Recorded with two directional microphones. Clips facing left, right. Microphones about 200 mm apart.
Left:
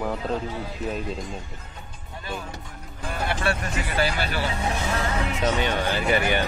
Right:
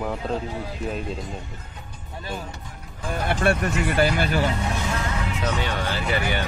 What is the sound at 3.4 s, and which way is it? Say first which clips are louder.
Speech: right 5 dB; 50° right (ahead or behind).